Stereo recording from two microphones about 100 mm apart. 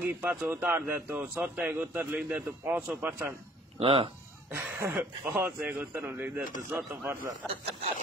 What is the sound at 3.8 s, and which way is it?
Speech, 65° right (ahead or behind).